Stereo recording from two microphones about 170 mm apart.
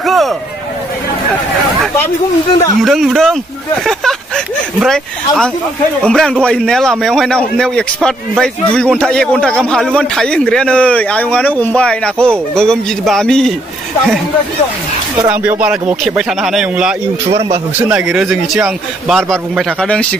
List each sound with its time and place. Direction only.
0.0 s a sound: centre (ahead or behind)
2.8 s a man's voice: centre (ahead or behind)
4.7 s a man's voice: centre (ahead or behind)
15.2 s a man's voice: 10° right (ahead or behind)
17.3 s speech: 35° right (ahead or behind)
17.8 s a man's voice: 5° right (ahead or behind)